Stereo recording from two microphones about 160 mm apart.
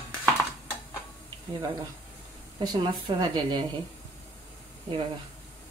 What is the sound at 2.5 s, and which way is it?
A woman's voice, 25° right (ahead or behind).